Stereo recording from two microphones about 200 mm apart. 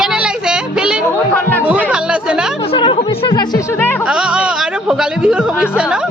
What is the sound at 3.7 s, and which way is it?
Speech, 10° left (ahead or behind).